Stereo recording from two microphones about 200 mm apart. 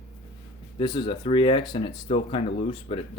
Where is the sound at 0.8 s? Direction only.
25° left (ahead or behind).